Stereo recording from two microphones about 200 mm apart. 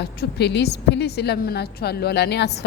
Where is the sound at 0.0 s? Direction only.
55° left (ahead or behind).